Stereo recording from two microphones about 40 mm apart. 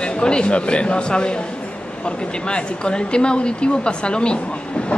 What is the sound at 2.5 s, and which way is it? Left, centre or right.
Speech, left.